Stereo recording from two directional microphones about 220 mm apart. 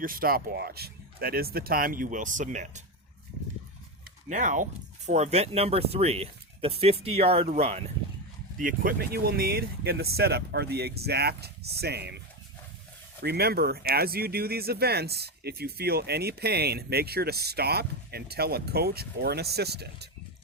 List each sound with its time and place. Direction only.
0.0 s speech: 40° right (ahead or behind)
4.3 s speech: 35° right (ahead or behind)
8.5 s speech: 40° right (ahead or behind)
13.2 s speech: 45° right (ahead or behind)